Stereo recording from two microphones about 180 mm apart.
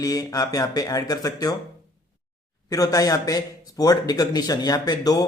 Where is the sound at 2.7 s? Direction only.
20° left (ahead or behind).